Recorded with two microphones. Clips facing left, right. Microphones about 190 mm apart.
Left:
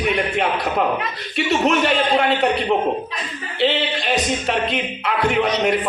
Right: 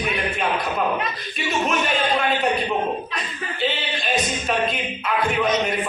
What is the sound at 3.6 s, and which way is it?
Speech, 70° left (ahead or behind).